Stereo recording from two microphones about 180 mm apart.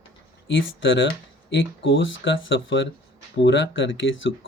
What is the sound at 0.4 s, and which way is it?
Speech, 90° left.